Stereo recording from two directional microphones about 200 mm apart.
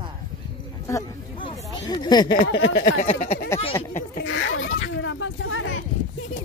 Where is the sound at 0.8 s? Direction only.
20° left (ahead or behind).